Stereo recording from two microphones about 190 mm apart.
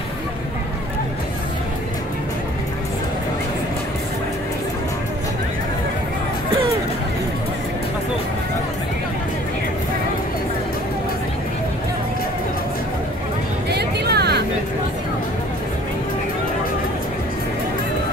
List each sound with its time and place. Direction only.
13.7 s music: 60° right (ahead or behind)